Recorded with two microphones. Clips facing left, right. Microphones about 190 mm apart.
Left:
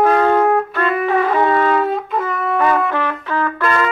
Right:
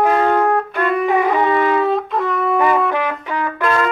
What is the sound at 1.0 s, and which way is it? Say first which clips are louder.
Wind instrument: left 1 dB; 15° right (ahead or behind).